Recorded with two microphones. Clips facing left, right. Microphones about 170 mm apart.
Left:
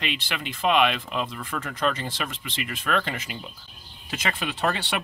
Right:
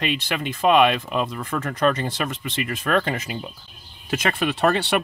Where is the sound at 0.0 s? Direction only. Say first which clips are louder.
Right 6 dB; 45° right (ahead or behind).